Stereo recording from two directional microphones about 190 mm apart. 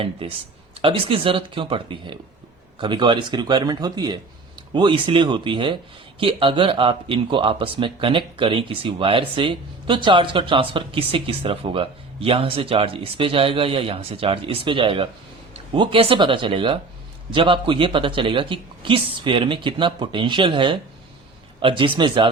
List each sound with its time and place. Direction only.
0.2 s speech: 30° right (ahead or behind)